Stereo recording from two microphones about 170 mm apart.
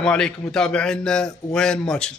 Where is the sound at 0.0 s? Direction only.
5° left (ahead or behind).